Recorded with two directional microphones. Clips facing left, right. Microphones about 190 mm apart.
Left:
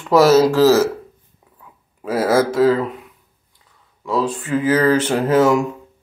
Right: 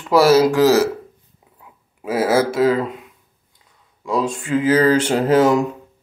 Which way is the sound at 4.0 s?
15° right (ahead or behind).